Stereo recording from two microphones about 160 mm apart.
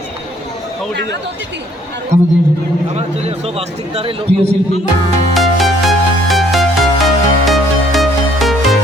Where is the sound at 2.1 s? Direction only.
50° right (ahead or behind).